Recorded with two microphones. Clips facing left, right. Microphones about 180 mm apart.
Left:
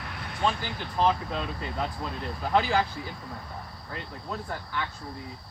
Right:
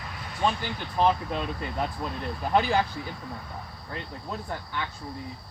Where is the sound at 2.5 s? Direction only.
20° right (ahead or behind).